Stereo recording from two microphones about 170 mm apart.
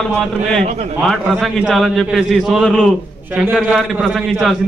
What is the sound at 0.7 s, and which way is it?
Speech, 40° right (ahead or behind).